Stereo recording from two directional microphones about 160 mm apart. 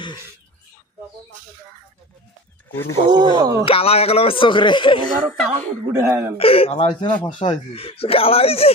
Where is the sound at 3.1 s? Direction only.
25° right (ahead or behind).